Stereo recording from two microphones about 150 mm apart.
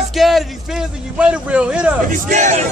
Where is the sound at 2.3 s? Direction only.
50° right (ahead or behind).